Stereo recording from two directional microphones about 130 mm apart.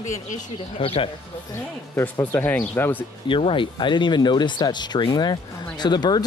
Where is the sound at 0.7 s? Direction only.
45° left (ahead or behind).